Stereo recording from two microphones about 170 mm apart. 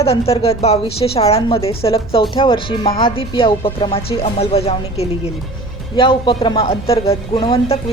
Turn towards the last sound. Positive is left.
turn(degrees=25)  # may be behind; listen again after turning